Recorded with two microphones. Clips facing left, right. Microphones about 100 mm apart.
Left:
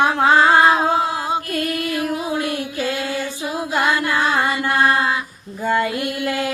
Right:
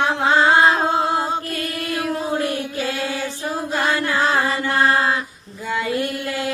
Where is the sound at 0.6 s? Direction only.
10° left (ahead or behind).